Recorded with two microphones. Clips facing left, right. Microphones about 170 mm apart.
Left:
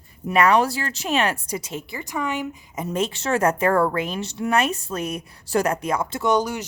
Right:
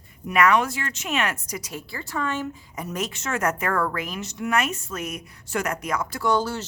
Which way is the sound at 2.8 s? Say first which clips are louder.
Left 5 dB; 30° left (ahead or behind).